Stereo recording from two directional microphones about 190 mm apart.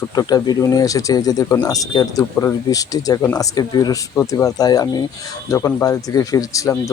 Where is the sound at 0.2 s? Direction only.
20° left (ahead or behind).